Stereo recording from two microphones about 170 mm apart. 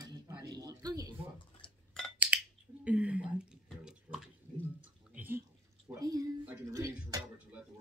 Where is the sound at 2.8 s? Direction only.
10° right (ahead or behind).